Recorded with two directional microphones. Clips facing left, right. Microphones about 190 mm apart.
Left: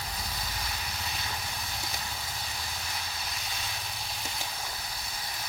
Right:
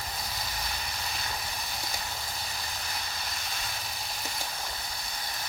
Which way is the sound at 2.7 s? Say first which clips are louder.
Right 1 dB; centre (ahead or behind).